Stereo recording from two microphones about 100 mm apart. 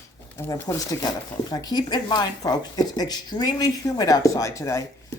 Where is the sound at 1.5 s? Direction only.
45° left (ahead or behind).